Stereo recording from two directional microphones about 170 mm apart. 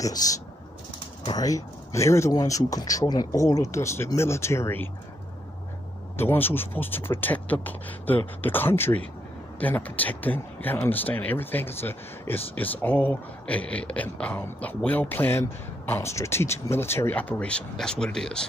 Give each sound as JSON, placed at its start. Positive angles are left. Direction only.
{"t": 0.0, "sound": "speech", "side_deg": 20}
{"t": 6.1, "sound": "speech", "side_deg": 10}